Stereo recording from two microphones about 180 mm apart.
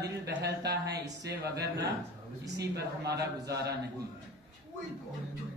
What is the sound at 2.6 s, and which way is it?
Speech, 65° right (ahead or behind).